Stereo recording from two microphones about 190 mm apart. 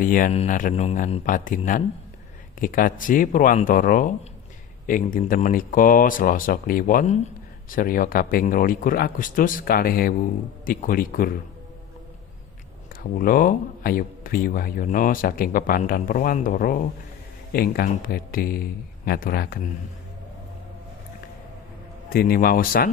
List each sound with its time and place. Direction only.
0.0 s a man's voice: 45° left (ahead or behind)
13.2 s a man's voice: 45° left (ahead or behind)
22.1 s a man's voice: 50° left (ahead or behind)